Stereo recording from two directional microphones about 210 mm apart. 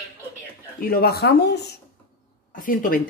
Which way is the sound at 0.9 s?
45° left (ahead or behind).